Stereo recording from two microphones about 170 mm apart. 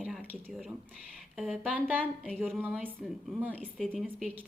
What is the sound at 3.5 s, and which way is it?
Speech, 5° left (ahead or behind).